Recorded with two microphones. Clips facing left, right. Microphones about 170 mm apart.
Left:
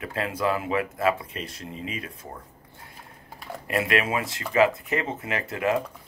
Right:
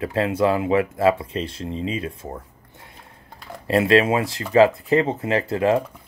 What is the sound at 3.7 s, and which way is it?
Speech, 30° right (ahead or behind).